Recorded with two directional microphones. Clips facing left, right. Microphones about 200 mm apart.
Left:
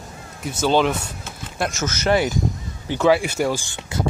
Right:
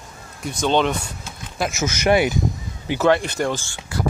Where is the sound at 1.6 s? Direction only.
10° right (ahead or behind).